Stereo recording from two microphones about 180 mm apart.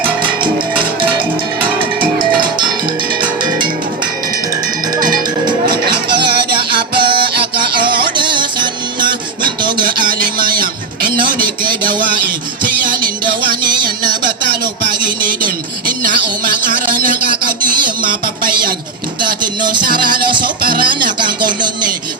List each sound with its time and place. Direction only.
6.1 s music: 60° right (ahead or behind)
8.0 s music: 25° right (ahead or behind)
9.0 s music: 50° right (ahead or behind)
9.7 s a sound: 50° right (ahead or behind)
19.2 s music: 25° right (ahead or behind)
20.6 s music: 55° right (ahead or behind)
20.8 s a sound: 25° right (ahead or behind)